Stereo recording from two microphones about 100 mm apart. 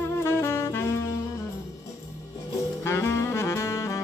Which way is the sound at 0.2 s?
25° left (ahead or behind).